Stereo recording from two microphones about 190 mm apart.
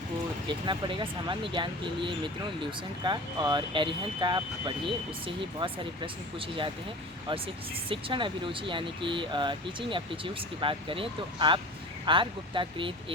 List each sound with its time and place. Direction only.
0.4 s speech: 25° right (ahead or behind)